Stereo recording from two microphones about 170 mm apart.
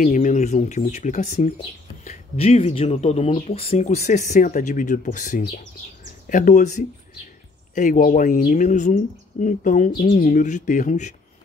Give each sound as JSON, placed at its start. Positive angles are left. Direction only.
{"t": 0.0, "sound": "speech", "side_deg": 50}